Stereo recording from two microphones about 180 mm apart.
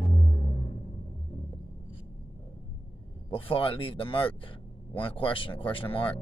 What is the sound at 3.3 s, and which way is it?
Speech, 30° left (ahead or behind).